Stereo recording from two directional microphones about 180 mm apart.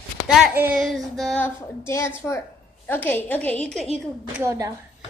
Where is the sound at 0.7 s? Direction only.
Centre (ahead or behind).